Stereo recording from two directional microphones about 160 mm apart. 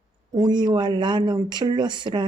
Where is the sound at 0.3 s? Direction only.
25° right (ahead or behind).